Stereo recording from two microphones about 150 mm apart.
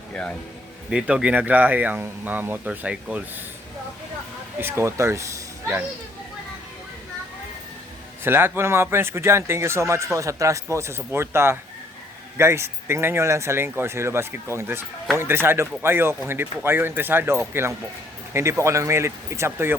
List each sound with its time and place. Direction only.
0.1 s speech: 10° left (ahead or behind)
0.9 s speech: 5° right (ahead or behind)
4.5 s speech: 15° right (ahead or behind)
8.2 s speech: 15° right (ahead or behind)